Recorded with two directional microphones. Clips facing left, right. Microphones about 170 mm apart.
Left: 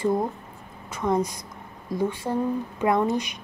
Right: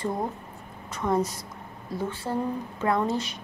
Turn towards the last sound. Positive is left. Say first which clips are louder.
# left 3 dB
turn(degrees=15)  # may be behind; listen again after turning